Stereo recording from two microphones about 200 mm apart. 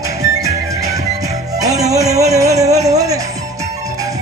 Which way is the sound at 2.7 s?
35° right (ahead or behind).